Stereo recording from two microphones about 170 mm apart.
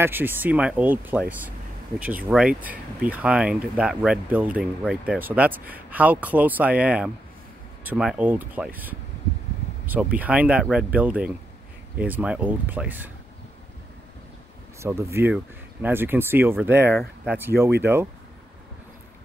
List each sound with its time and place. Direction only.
0.0 s speech: 10° right (ahead or behind)
10.1 s speech: 10° right (ahead or behind)
14.8 s speech: 15° right (ahead or behind)